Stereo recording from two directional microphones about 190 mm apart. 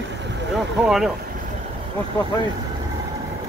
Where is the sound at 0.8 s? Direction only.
Centre (ahead or behind).